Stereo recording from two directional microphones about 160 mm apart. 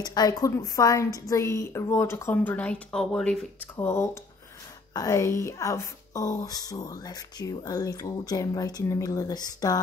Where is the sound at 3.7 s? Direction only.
15° left (ahead or behind).